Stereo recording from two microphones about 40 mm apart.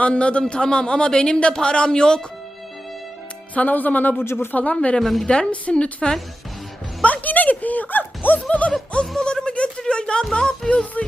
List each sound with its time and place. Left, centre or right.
0.0 s speech: left
3.5 s speech: left
4.2 s speech: left
4.5 s speech: left
4.9 s a woman's voice: centre
5.2 s speech: left
7.0 s a sound: left
8.4 s speech: left
9.2 s a sound: left
9.8 s music: left
10.6 s speech: centre